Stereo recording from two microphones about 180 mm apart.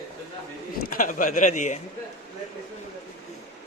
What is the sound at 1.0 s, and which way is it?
Speech, 45° left (ahead or behind).